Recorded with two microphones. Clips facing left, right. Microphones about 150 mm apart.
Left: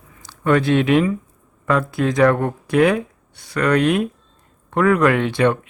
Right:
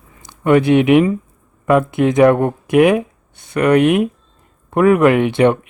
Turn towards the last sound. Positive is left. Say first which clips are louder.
# right 4 dB
turn(degrees=-20)  # may be behind; listen again after turning